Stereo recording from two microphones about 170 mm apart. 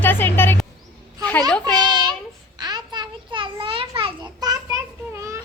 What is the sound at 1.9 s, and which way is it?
Child singing, 25° right (ahead or behind).